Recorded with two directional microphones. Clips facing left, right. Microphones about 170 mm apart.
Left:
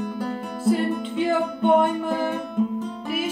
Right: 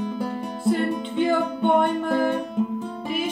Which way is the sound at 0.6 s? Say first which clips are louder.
Left 1 dB; 5° left (ahead or behind).